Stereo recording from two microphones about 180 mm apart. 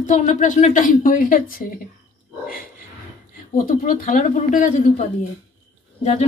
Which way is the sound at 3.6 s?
45° left (ahead or behind).